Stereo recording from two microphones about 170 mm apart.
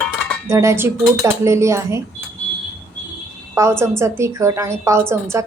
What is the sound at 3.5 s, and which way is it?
A woman's voice, 15° right (ahead or behind).